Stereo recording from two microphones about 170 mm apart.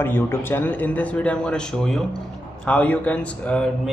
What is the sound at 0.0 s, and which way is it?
Speech, 15° left (ahead or behind).